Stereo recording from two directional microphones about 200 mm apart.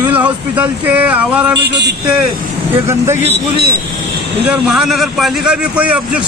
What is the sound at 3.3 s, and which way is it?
Speech, 50° right (ahead or behind).